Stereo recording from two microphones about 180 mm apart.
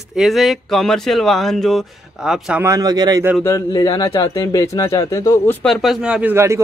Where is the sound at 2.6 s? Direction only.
20° right (ahead or behind).